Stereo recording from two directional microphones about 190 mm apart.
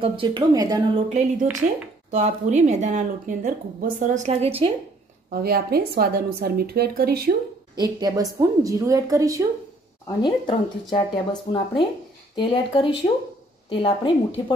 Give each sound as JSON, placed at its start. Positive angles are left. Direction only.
{"t": 0.0, "sound": "speech", "side_deg": -25}
{"t": 1.0, "sound": "speech", "side_deg": -35}
{"t": 5.3, "sound": "speech", "side_deg": -55}
{"t": 7.7, "sound": "a woman's voice", "side_deg": -20}
{"t": 10.0, "sound": "speech", "side_deg": 25}